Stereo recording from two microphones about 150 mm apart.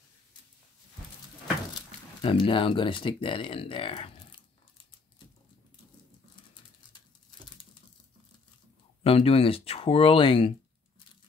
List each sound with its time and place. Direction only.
2.2 s speech: 35° left (ahead or behind)
9.0 s speech: 40° left (ahead or behind)